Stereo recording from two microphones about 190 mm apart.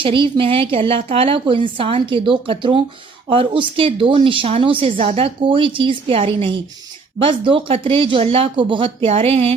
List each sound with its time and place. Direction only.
0.0 s a woman's voice: 25° right (ahead or behind)